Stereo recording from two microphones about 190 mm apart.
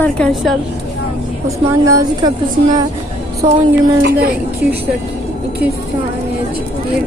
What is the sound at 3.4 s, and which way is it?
Speech, 35° right (ahead or behind).